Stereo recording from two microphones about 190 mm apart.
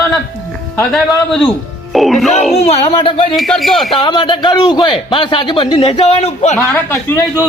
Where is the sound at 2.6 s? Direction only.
30° left (ahead or behind).